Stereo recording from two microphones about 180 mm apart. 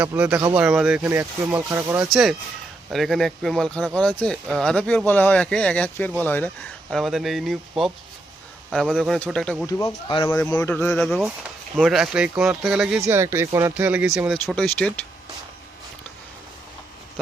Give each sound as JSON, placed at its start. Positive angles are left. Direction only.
{"t": 0.0, "sound": "speech", "side_deg": -10}
{"t": 2.0, "sound": "speech", "side_deg": 0}
{"t": 6.9, "sound": "speech", "side_deg": 0}
{"t": 9.6, "sound": "speech", "side_deg": 20}
{"t": 10.9, "sound": "speech", "side_deg": 0}
{"t": 13.0, "sound": "speech", "side_deg": -15}
{"t": 14.4, "sound": "speech", "side_deg": 5}